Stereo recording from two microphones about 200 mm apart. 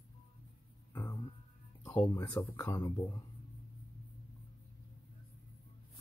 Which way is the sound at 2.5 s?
15° left (ahead or behind).